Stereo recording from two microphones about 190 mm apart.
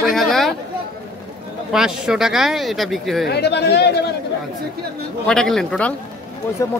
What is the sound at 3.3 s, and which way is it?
Speech, 60° left (ahead or behind).